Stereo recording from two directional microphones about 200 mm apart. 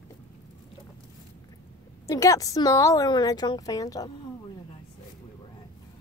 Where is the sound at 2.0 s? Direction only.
15° left (ahead or behind).